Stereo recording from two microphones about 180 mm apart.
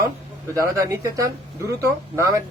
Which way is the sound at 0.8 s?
20° right (ahead or behind).